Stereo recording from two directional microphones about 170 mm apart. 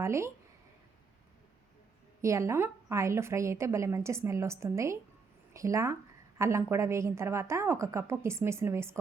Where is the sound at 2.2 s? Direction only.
15° right (ahead or behind).